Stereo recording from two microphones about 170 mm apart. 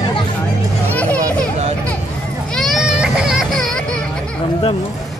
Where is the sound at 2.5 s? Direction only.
Centre (ahead or behind).